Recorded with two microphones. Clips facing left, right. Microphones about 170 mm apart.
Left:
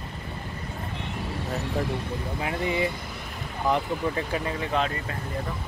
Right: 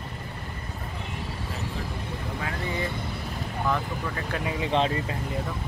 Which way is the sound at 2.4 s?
20° left (ahead or behind).